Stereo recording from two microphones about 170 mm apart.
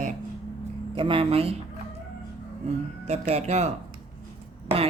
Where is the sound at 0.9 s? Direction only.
30° right (ahead or behind).